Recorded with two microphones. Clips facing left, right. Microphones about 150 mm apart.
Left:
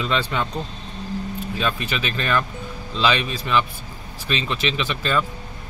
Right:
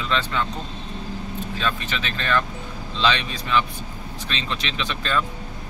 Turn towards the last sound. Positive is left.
turn(degrees=5)  # may be behind; listen again after turning